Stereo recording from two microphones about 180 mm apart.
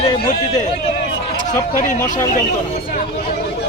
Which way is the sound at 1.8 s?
45° left (ahead or behind).